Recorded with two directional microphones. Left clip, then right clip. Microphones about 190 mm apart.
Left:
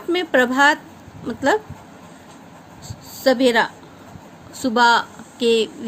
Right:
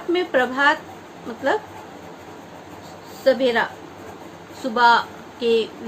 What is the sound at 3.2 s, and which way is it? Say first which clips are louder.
Speech: left 2 dB; 65° left (ahead or behind).